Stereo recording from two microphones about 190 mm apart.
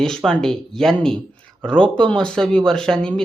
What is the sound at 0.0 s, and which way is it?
Speech, 5° left (ahead or behind).